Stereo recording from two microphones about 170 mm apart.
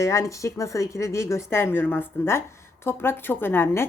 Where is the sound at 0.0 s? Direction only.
20° left (ahead or behind).